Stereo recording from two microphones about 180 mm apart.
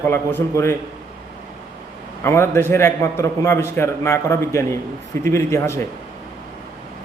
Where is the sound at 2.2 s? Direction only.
15° left (ahead or behind).